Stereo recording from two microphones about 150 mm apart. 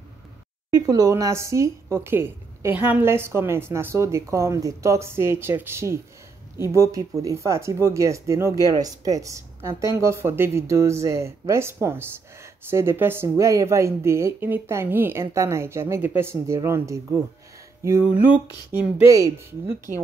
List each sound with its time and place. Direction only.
0.7 s speech: 25° right (ahead or behind)
19.0 s speech: 20° right (ahead or behind)